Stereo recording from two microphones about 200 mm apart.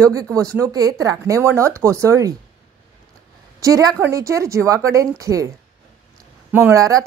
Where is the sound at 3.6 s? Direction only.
15° right (ahead or behind).